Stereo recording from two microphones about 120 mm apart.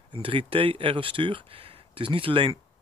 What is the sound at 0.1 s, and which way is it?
Speech, 45° right (ahead or behind).